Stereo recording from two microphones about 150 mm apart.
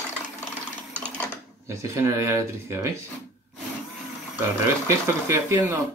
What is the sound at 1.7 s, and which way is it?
Speech, 20° right (ahead or behind).